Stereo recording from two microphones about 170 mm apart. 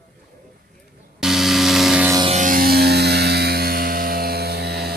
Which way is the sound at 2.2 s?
45° right (ahead or behind).